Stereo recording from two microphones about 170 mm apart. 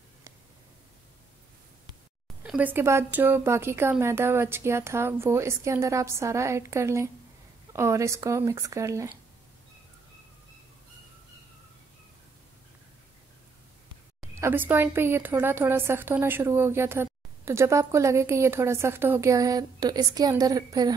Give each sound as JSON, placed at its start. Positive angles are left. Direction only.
{"t": 2.4, "sound": "a woman's voice", "side_deg": -10}
{"t": 14.2, "sound": "a woman's voice", "side_deg": -15}